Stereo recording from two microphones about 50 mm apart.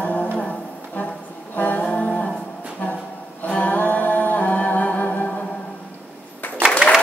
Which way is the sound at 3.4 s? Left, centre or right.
Left.